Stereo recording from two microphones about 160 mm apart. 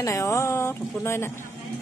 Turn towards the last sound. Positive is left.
turn(degrees=15)  # may be behind; listen again after turning